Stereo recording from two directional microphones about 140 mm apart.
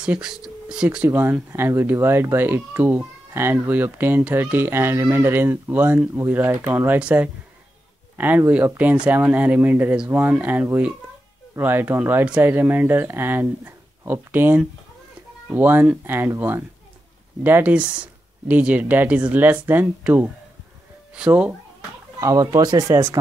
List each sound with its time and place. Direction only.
0.0 s speech: 5° right (ahead or behind)
22.2 s speech: 25° right (ahead or behind)